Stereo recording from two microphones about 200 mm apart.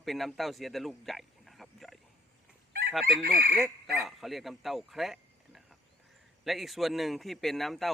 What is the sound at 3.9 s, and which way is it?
Speech, centre (ahead or behind).